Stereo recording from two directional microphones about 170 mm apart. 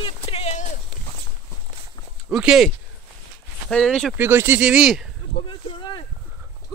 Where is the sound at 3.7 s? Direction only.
5° left (ahead or behind).